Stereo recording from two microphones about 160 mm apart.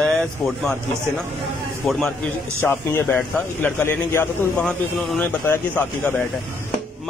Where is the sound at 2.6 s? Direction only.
15° left (ahead or behind).